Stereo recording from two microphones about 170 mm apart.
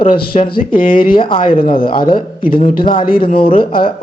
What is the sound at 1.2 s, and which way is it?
A man's voice, 30° left (ahead or behind).